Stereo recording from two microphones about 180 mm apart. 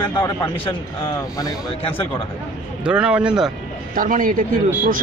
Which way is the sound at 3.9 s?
50° right (ahead or behind).